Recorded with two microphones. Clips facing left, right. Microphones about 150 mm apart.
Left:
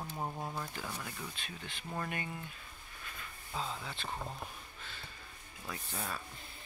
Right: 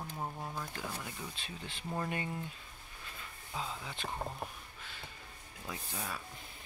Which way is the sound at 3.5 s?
10° right (ahead or behind).